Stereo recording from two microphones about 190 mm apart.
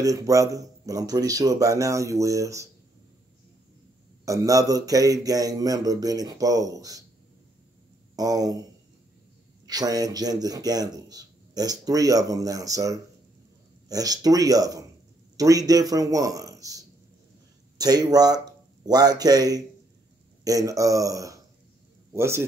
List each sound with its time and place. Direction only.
0.0 s speech: 15° right (ahead or behind)
4.3 s a man's voice: 15° right (ahead or behind)
8.2 s a man's voice: 20° right (ahead or behind)
9.7 s a man's voice: 20° right (ahead or behind)